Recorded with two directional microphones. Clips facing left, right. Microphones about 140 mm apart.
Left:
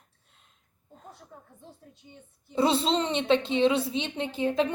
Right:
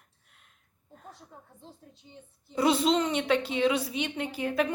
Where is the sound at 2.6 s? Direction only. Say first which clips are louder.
Even; 25° left (ahead or behind).